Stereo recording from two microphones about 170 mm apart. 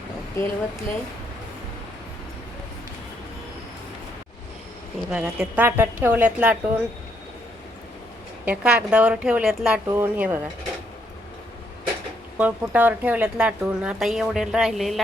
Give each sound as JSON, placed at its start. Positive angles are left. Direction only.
{"t": 0.4, "sound": "speech", "side_deg": 20}
{"t": 5.1, "sound": "a woman's voice", "side_deg": -5}
{"t": 8.4, "sound": "a woman's voice", "side_deg": -5}
{"t": 12.4, "sound": "speech", "side_deg": -10}